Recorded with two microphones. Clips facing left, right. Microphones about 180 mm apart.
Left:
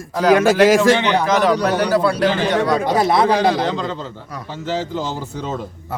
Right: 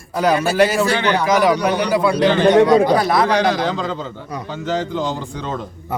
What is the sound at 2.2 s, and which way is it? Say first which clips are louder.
Speech: right 3 dB; 5° left (ahead or behind).